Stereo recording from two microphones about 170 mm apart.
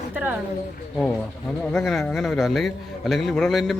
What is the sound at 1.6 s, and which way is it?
A man's voice, 5° left (ahead or behind).